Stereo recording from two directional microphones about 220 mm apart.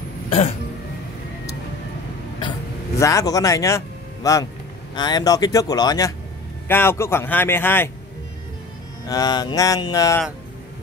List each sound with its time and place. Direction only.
0.3 s throat clearing: 25° left (ahead or behind)
3.0 s a man's voice: 15° left (ahead or behind)
9.0 s speech: 15° left (ahead or behind)